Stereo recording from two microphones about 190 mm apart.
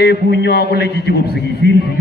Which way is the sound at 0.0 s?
60° left (ahead or behind).